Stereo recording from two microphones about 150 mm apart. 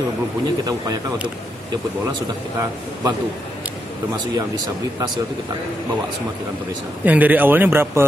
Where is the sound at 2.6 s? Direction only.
20° right (ahead or behind).